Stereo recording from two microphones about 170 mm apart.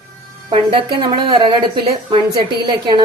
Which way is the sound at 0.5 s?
30° right (ahead or behind).